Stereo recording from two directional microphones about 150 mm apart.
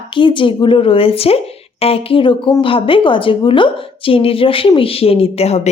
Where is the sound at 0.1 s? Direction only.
35° left (ahead or behind).